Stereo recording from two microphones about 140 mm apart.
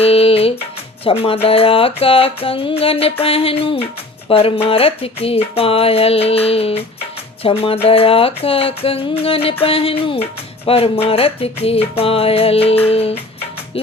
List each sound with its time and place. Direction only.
0.0 s speech: 45° left (ahead or behind)